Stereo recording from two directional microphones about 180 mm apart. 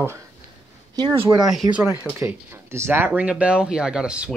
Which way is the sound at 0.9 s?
25° right (ahead or behind).